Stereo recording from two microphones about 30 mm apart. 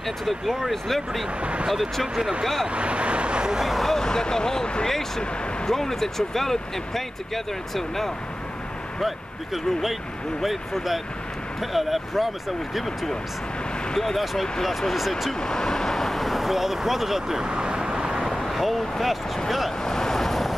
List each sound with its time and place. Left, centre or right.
0.2 s speech: centre
1.4 s speech: right
1.7 s speech: centre
2.7 s speech: right
3.7 s speech: centre
4.0 s speech: left
9.0 s speech: centre
13.9 s speech: centre
15.0 s speech: centre
15.4 s speech: left; by 17.4 s centre
17.4 s vehicle: right
18.5 s speech: centre
19.8 s vehicle: centre